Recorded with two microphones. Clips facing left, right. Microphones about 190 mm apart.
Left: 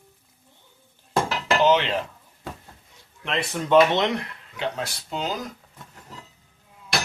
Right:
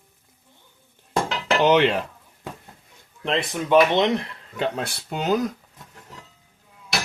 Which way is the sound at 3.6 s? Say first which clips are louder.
Even; 15° right (ahead or behind).